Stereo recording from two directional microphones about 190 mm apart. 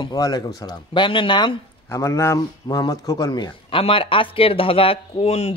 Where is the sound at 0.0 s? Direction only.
20° left (ahead or behind).